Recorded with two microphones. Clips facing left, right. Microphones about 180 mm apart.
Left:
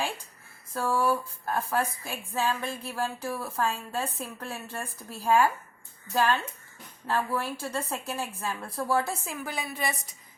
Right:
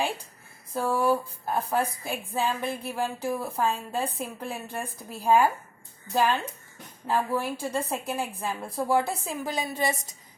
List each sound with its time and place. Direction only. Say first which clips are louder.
0.7 s a woman's voice: right 2 dB; 15° right (ahead or behind)